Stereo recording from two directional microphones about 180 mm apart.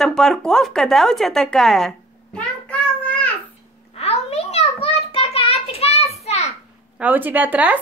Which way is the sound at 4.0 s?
35° left (ahead or behind).